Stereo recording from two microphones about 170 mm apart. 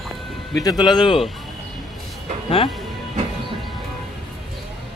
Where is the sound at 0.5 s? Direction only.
20° left (ahead or behind).